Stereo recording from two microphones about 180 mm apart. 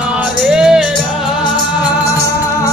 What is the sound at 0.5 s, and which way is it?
Music, 5° right (ahead or behind).